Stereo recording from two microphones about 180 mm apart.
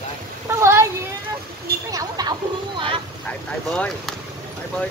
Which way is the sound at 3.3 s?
5° left (ahead or behind).